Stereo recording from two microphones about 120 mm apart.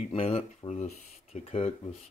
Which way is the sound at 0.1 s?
55° left (ahead or behind).